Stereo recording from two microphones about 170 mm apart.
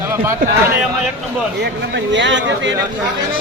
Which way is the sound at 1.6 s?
90° right.